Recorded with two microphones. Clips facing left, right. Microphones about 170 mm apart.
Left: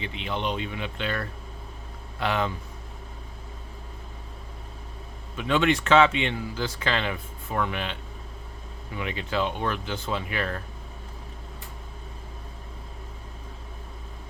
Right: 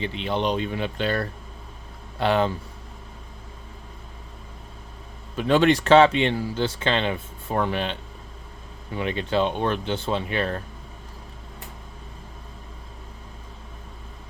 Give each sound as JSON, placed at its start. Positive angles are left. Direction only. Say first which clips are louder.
{"t": 0.0, "sound": "speech", "louder": "right 5 dB", "side_deg": -35}
{"t": 5.4, "sound": "speech", "louder": "right 5 dB", "side_deg": -35}
{"t": 9.0, "sound": "speech", "louder": "right 5 dB", "side_deg": -30}